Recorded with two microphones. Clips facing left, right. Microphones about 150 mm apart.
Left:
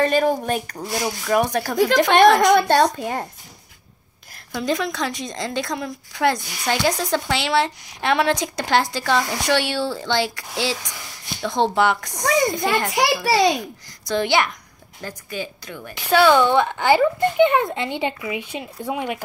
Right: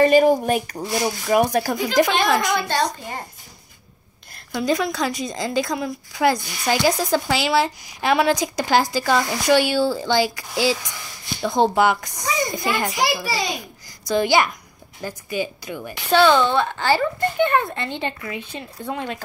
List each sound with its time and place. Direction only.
0.0 s speech: 10° right (ahead or behind)
2.0 s a woman's voice: 60° left (ahead or behind)
4.5 s a woman's voice: centre (ahead or behind)
12.2 s a child's voice: 65° left (ahead or behind)
14.0 s a woman's voice: 5° right (ahead or behind)
16.1 s speech: 10° left (ahead or behind)